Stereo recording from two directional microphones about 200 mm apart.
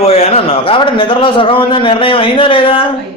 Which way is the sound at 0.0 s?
30° left (ahead or behind).